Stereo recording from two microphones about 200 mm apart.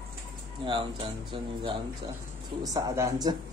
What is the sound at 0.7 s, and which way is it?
Speech, 25° right (ahead or behind).